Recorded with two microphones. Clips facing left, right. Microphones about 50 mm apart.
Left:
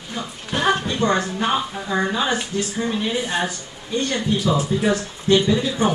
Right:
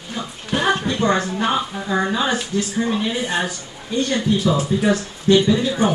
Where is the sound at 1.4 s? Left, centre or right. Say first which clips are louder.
Right 1 dB; centre.